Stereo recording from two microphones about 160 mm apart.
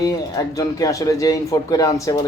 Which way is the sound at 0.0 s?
20° left (ahead or behind).